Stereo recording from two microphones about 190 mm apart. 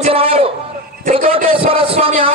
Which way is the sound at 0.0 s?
30° right (ahead or behind).